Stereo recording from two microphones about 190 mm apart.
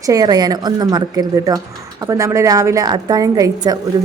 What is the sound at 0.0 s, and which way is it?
Speech, 20° right (ahead or behind).